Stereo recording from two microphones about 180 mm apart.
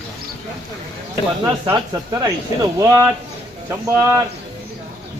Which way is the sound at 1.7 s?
20° right (ahead or behind).